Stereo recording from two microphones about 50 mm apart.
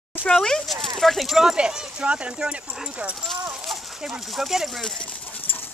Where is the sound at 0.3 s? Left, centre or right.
Centre.